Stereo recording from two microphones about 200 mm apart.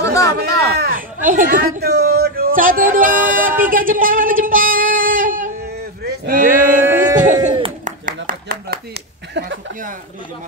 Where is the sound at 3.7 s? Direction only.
45° right (ahead or behind).